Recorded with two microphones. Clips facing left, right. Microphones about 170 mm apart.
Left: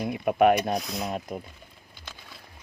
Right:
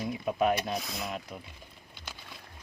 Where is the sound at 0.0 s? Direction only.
65° left (ahead or behind).